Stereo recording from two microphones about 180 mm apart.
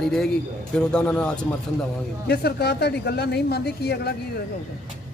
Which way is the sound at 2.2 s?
65° left (ahead or behind).